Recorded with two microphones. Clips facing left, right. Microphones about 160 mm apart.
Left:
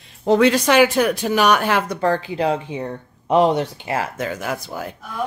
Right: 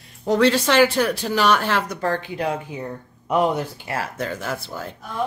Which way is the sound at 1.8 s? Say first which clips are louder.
Left 4 dB; 30° left (ahead or behind).